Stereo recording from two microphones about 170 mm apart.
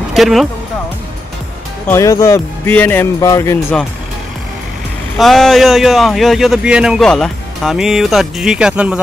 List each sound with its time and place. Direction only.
0.1 s speech: centre (ahead or behind)
1.9 s speech: 20° left (ahead or behind)
5.2 s speech: centre (ahead or behind)